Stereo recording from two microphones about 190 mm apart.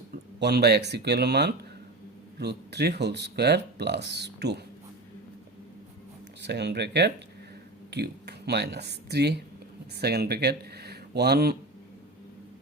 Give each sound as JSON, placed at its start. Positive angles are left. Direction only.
{"t": 0.3, "sound": "speech", "side_deg": -60}
{"t": 6.4, "sound": "speech", "side_deg": -60}